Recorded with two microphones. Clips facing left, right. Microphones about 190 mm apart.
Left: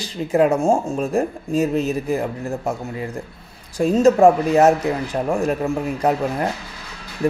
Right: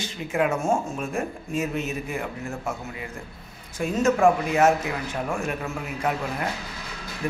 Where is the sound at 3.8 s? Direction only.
35° left (ahead or behind).